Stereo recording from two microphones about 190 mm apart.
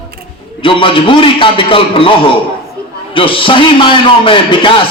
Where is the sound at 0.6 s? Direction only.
25° left (ahead or behind).